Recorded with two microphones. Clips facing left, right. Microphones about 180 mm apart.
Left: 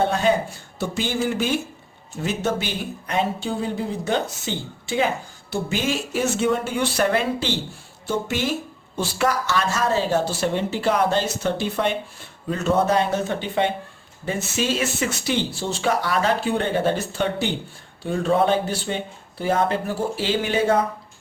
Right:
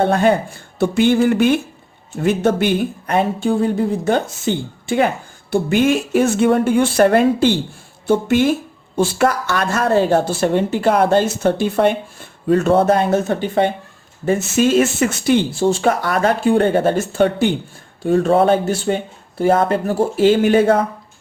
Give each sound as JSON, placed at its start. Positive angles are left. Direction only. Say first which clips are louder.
{"t": 0.0, "sound": "speech", "louder": "right 5 dB", "side_deg": -55}